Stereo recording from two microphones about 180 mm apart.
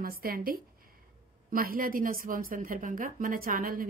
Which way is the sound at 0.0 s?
55° right (ahead or behind).